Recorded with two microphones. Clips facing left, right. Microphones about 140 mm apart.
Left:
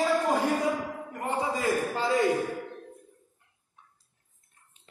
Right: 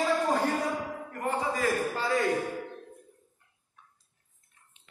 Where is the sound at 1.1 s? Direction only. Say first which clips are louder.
Even; 20° left (ahead or behind).